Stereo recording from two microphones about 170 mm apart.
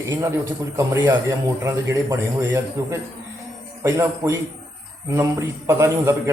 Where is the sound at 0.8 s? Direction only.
15° right (ahead or behind).